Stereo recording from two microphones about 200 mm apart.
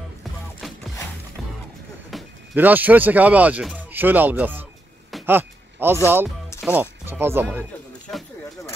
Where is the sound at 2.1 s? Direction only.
10° right (ahead or behind).